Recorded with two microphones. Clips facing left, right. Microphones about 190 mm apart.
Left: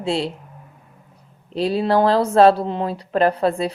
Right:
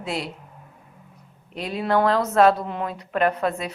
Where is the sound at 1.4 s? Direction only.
30° left (ahead or behind).